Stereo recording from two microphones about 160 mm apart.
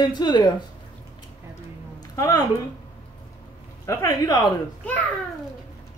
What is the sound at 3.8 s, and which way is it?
Speech, 20° left (ahead or behind).